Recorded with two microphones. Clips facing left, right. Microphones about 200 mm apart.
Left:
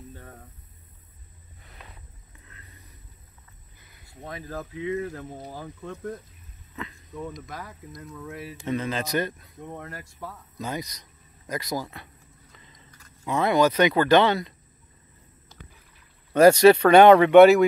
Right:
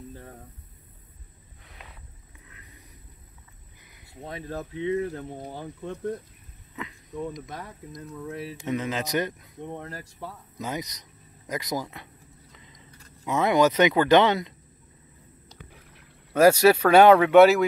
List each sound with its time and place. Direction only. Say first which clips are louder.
2.4 s vehicle: even; 15° right (ahead or behind)
4.2 s speech: right 1 dB; 30° right (ahead or behind)
6.8 s speech: right 2 dB; 15° right (ahead or behind)
8.3 s speech: right 3 dB; 30° right (ahead or behind)
8.6 s speech: left 1 dB; 15° right (ahead or behind)
9.8 s speech: right 1 dB; 30° right (ahead or behind)
10.6 s speech: even; 20° right (ahead or behind)
12.5 s biting: right 1 dB; 15° right (ahead or behind)
13.3 s speech: even; 20° right (ahead or behind)
16.3 s speech: left 3 dB; 5° right (ahead or behind)